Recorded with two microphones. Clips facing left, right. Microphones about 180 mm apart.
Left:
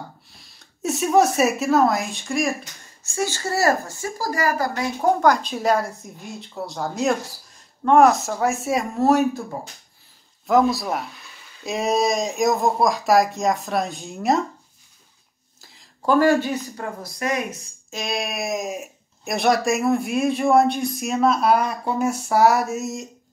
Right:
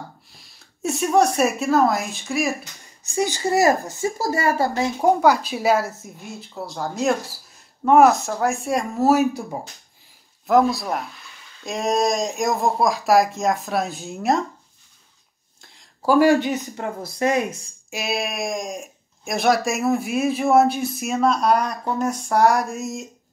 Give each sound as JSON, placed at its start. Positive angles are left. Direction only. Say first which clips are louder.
{"t": 0.4, "sound": "speech", "louder": "right 1 dB", "side_deg": 0}
{"t": 3.0, "sound": "speech", "louder": "right 3 dB", "side_deg": -15}
{"t": 5.0, "sound": "speech", "louder": "right 1 dB", "side_deg": -10}
{"t": 10.4, "sound": "speech", "louder": "right 1 dB", "side_deg": 0}
{"t": 15.6, "sound": "a sound", "louder": "right 1 dB", "side_deg": 0}
{"t": 16.2, "sound": "speech", "louder": "right 2 dB", "side_deg": -15}
{"t": 17.8, "sound": "speech", "louder": "right 1 dB", "side_deg": -5}